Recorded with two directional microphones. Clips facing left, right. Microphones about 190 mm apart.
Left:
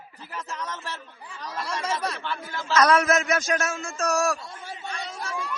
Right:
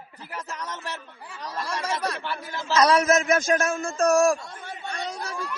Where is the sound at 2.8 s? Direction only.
35° right (ahead or behind); by 4.3 s 55° right (ahead or behind).